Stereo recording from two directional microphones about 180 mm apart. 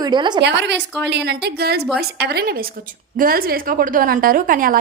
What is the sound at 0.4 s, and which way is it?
A woman's voice, 70° right (ahead or behind).